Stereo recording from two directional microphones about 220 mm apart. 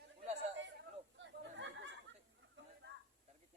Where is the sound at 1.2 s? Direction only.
55° right (ahead or behind).